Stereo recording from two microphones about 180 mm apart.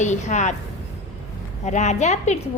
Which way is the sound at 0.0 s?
40° left (ahead or behind).